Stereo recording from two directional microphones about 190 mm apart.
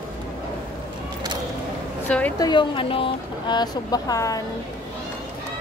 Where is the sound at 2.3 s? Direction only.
20° left (ahead or behind).